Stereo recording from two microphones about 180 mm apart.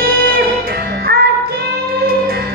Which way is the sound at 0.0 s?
55° right (ahead or behind).